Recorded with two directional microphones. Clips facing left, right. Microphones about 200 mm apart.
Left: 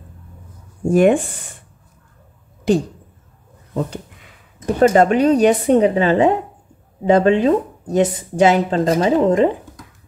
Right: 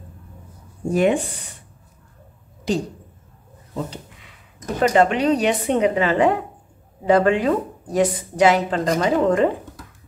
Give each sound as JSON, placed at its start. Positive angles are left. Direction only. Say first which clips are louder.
{"t": 0.8, "sound": "speech", "louder": "left 5 dB", "side_deg": 50}
{"t": 3.7, "sound": "a sound", "louder": "left 5 dB", "side_deg": 50}
{"t": 4.7, "sound": "speech", "louder": "left 4 dB", "side_deg": 40}